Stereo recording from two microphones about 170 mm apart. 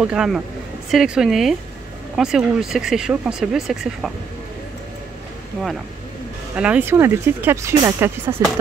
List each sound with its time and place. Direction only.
0.0 s speech: 5° right (ahead or behind)
6.5 s speech: 10° right (ahead or behind)